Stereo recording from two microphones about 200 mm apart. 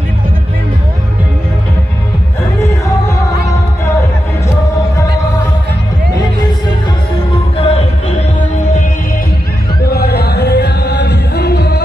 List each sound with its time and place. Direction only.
7.5 s music: 30° left (ahead or behind)
9.8 s music: 50° left (ahead or behind)